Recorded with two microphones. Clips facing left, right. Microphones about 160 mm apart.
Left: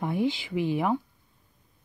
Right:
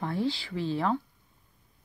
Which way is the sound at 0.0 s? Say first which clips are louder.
Left 3 dB; 15° left (ahead or behind).